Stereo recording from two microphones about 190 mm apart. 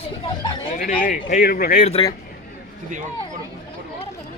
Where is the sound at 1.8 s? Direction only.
25° left (ahead or behind).